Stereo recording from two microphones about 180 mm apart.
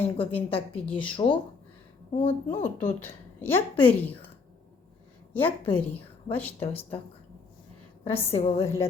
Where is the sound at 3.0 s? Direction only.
10° left (ahead or behind).